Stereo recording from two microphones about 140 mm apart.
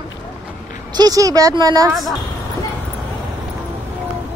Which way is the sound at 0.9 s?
25° right (ahead or behind).